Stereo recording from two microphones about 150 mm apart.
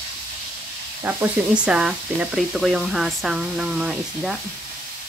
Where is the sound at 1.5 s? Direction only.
5° right (ahead or behind).